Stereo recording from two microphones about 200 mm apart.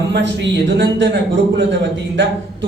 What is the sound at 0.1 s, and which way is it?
Speech, 60° right (ahead or behind).